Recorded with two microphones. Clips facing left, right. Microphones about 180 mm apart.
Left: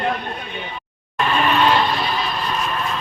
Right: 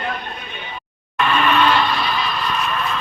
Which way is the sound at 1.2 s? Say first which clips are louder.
Right 1 dB; 35° left (ahead or behind).